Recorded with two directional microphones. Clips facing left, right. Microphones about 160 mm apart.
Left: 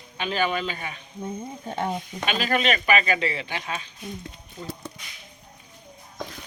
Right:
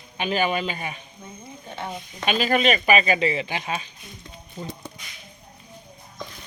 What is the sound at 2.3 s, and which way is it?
Speech, 20° right (ahead or behind).